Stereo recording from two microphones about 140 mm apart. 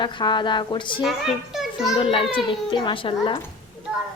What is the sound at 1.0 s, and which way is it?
Speech, centre (ahead or behind).